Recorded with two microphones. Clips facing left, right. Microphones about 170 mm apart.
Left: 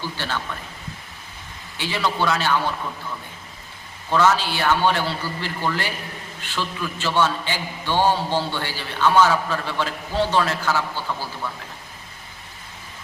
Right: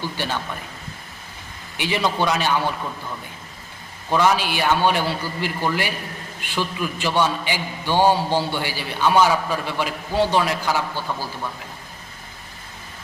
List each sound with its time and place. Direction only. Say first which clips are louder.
0.2 s a man's voice: right 3 dB; 15° right (ahead or behind)
1.8 s a man's voice: right 2 dB; 15° right (ahead or behind)
4.1 s a man's voice: even; 15° right (ahead or behind)